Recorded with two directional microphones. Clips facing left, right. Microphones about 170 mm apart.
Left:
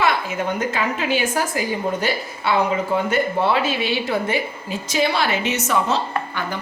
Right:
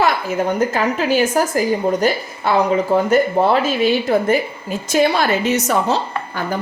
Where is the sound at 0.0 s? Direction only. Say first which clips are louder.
Right 4 dB; 40° right (ahead or behind).